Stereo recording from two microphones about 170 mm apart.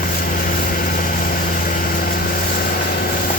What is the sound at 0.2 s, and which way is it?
Vehicle, 55° left (ahead or behind).